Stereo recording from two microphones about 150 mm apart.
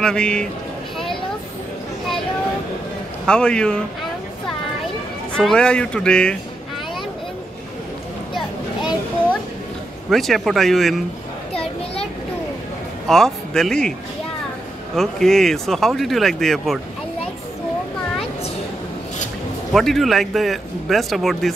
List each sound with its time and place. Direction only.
0.0 s speech: 5° left (ahead or behind)
3.3 s speech: 5° left (ahead or behind)
5.3 s speech: 5° left (ahead or behind)
10.0 s speech: centre (ahead or behind)
11.5 s a sound: 40° left (ahead or behind)
13.1 s speech: 5° left (ahead or behind)
15.0 s speech: 5° left (ahead or behind)
19.7 s speech: centre (ahead or behind)